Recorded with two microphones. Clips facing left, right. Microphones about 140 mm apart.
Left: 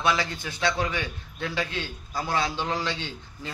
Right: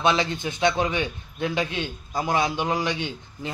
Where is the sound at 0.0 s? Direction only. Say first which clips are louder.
Right 4 dB; 20° right (ahead or behind).